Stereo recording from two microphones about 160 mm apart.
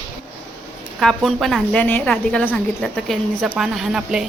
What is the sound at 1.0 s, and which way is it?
A woman's voice, centre (ahead or behind).